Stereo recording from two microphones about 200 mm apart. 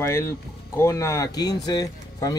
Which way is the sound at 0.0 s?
15° left (ahead or behind).